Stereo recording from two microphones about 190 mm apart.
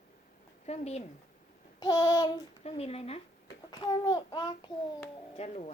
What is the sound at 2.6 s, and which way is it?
A child's voice, 35° left (ahead or behind).